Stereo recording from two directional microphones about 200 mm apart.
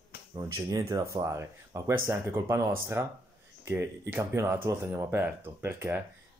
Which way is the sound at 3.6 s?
10° right (ahead or behind).